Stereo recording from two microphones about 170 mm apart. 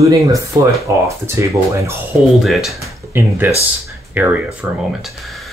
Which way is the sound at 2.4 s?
Centre (ahead or behind).